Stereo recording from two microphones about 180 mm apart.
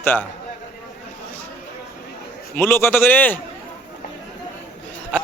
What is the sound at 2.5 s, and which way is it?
Speech, 10° left (ahead or behind).